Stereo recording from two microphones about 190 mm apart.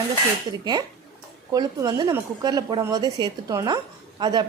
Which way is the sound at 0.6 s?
20° right (ahead or behind).